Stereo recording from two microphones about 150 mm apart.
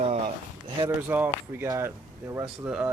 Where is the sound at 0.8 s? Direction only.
15° right (ahead or behind).